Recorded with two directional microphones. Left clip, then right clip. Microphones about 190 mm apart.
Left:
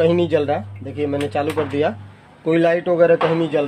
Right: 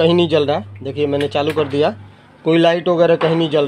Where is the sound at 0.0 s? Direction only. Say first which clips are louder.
Right 3 dB; 25° right (ahead or behind).